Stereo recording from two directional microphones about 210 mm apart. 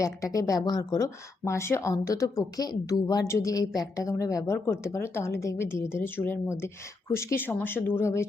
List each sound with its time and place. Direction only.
0.0 s speech: 15° left (ahead or behind)